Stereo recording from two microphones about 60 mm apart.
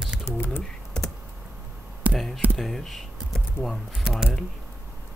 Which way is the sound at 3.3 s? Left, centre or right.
Centre.